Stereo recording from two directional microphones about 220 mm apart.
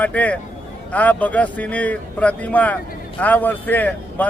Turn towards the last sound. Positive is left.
turn(degrees=5)  # may be behind; listen again after turning